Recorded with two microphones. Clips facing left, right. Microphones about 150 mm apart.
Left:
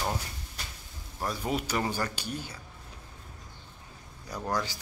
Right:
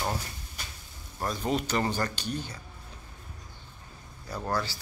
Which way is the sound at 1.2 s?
10° left (ahead or behind).